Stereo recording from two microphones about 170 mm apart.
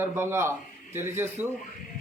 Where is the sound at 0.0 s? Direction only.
15° right (ahead or behind).